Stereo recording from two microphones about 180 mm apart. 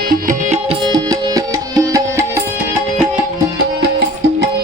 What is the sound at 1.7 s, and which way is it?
Music, 20° right (ahead or behind).